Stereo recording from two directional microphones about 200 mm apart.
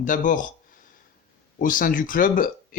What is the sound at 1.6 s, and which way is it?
Speech, 45° left (ahead or behind).